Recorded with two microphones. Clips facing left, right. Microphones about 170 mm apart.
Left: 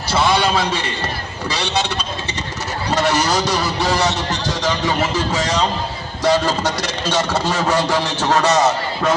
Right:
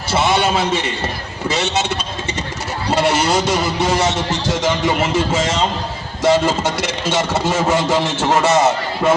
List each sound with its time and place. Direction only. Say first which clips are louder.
0.1 s a man's voice: even; 25° right (ahead or behind)
3.1 s a man's voice: right 1 dB; 25° right (ahead or behind)